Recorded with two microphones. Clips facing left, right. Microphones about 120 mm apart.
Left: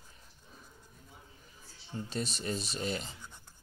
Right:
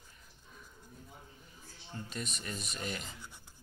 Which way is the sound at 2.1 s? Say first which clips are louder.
Left 7 dB; 30° left (ahead or behind).